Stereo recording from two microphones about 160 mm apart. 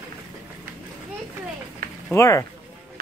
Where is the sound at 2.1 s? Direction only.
20° left (ahead or behind).